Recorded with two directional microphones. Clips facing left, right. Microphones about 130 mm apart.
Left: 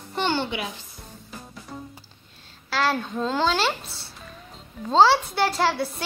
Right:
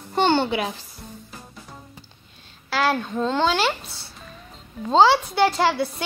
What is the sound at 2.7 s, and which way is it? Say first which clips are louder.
Speech: right 2 dB; centre (ahead or behind).